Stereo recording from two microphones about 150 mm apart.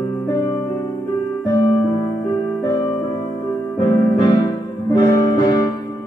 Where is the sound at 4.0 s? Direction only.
25° left (ahead or behind).